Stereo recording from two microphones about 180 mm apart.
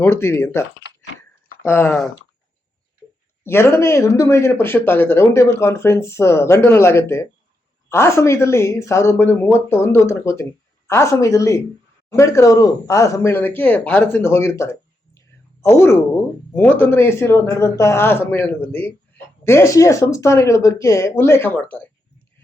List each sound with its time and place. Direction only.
0.0 s speech: 15° left (ahead or behind)
1.6 s speech: 15° left (ahead or behind)
3.4 s speech: 15° left (ahead or behind)